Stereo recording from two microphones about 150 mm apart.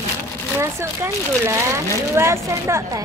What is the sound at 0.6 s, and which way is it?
A woman's voice, 20° right (ahead or behind).